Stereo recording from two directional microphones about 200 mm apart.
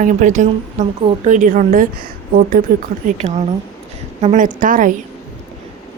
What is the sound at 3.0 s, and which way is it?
A woman's voice, 35° right (ahead or behind).